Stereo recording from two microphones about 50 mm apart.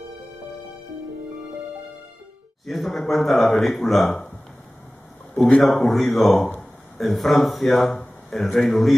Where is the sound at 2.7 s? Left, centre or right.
Centre.